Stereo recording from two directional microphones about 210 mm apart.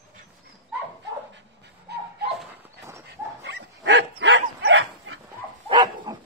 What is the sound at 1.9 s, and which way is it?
Dog, 50° right (ahead or behind).